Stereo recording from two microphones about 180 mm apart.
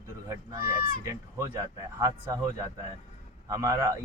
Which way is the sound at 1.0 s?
15° right (ahead or behind).